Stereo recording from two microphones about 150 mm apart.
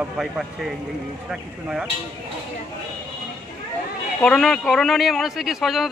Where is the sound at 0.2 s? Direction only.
Centre (ahead or behind).